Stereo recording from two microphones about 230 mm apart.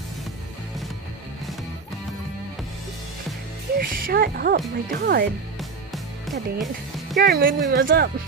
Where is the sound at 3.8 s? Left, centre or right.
Right.